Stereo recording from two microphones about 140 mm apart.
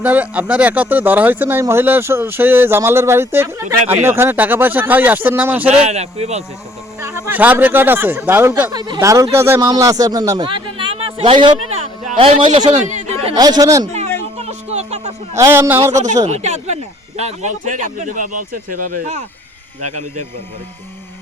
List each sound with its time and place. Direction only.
0.0 s speech: 10° right (ahead or behind)
5.6 s speech: 50° right (ahead or behind)
7.3 s speech: 15° right (ahead or behind)
8.7 s speech: 30° right (ahead or behind)
12.5 s speech: 55° right (ahead or behind)
13.3 s speech: 30° right (ahead or behind)
13.9 s a sound: 50° right (ahead or behind)
15.4 s speech: 20° right (ahead or behind)
16.3 s speech: 55° right (ahead or behind); by 18.4 s 70° right (ahead or behind)